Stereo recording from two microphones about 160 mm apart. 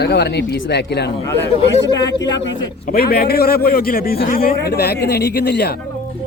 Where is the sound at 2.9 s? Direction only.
75° left (ahead or behind); by 5.8 s 90° left.